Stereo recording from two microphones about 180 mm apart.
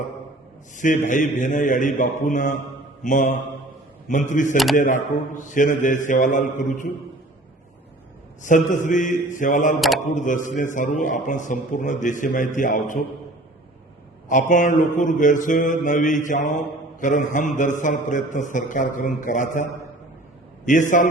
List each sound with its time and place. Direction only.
0.8 s mantra: 45° left (ahead or behind)
4.5 s speech: centre (ahead or behind)
4.8 s mantra: 45° left (ahead or behind)
8.4 s mantra: 45° left (ahead or behind)
14.3 s mantra: 45° left (ahead or behind)
20.7 s mantra: 45° left (ahead or behind)